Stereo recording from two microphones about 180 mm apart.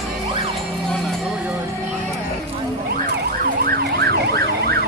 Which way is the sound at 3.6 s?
65° right (ahead or behind).